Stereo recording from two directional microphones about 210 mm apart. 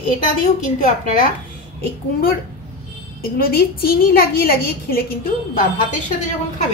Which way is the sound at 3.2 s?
45° left (ahead or behind).